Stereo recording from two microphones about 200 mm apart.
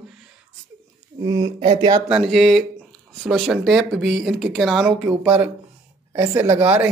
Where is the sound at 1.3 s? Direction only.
25° right (ahead or behind).